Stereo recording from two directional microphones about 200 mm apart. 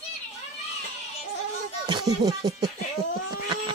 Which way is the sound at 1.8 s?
20° right (ahead or behind).